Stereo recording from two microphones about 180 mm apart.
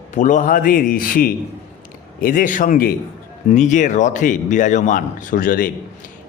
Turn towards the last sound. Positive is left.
turn(degrees=50)  # may be behind; listen again after turning